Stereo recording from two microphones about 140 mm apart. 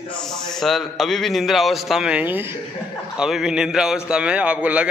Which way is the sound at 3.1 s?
5° right (ahead or behind).